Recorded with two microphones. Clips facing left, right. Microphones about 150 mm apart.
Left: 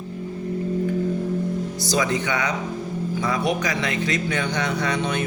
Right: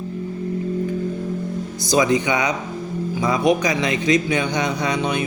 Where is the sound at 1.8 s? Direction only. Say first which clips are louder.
Right 7 dB; 15° right (ahead or behind).